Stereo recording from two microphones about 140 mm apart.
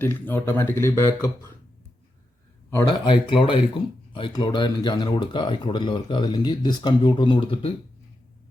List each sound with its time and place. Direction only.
0.0 s speech: 15° left (ahead or behind)
2.8 s speech: 40° left (ahead or behind)